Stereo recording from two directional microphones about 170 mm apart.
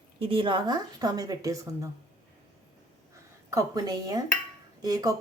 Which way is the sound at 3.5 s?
20° right (ahead or behind).